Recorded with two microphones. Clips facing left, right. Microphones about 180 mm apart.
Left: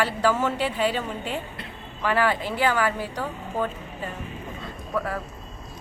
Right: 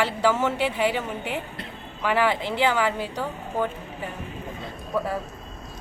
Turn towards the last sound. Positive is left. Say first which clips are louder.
# right 1 dB
turn(degrees=-25)  # may be behind; listen again after turning